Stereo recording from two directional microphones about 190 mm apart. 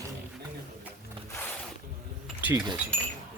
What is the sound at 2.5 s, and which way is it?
Speech, 25° right (ahead or behind).